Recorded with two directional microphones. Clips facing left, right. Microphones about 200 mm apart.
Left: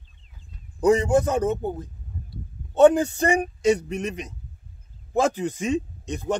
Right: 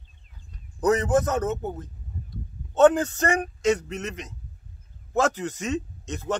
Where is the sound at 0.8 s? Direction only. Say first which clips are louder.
Left 3 dB; 10° left (ahead or behind).